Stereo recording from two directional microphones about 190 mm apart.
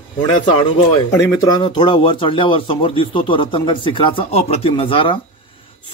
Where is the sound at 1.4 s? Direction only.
20° left (ahead or behind).